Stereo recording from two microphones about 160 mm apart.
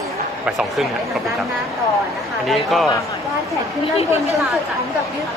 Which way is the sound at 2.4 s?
Centre (ahead or behind).